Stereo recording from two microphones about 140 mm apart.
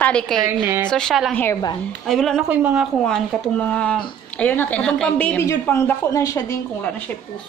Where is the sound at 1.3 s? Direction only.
15° left (ahead or behind).